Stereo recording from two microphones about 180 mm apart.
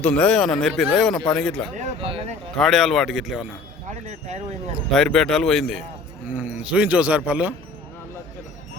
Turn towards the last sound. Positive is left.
turn(degrees=-10)  # may be behind; listen again after turning